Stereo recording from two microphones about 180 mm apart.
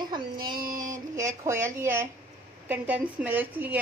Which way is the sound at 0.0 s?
25° right (ahead or behind).